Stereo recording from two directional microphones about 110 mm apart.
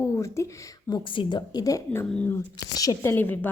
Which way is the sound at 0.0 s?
25° left (ahead or behind).